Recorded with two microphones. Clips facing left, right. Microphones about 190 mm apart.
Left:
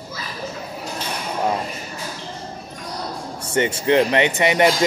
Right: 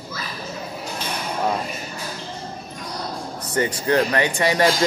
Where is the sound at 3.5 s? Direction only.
25° left (ahead or behind).